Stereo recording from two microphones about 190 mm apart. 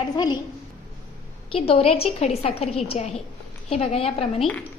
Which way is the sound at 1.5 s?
30° left (ahead or behind).